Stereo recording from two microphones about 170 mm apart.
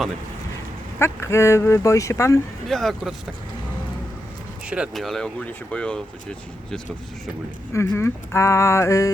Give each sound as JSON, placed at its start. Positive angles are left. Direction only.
{"t": 0.9, "sound": "speech", "side_deg": 15}
{"t": 2.6, "sound": "speech", "side_deg": 0}
{"t": 4.6, "sound": "speech", "side_deg": -5}
{"t": 7.7, "sound": "speech", "side_deg": 15}